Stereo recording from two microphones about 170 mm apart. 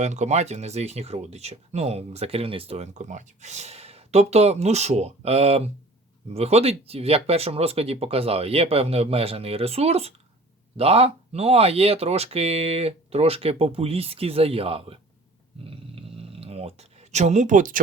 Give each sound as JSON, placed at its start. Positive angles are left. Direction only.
{"t": 0.0, "sound": "speech", "side_deg": -45}
{"t": 15.6, "sound": "dog", "side_deg": -35}